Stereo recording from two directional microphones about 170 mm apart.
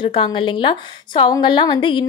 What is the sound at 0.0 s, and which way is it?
A woman's voice, 30° left (ahead or behind).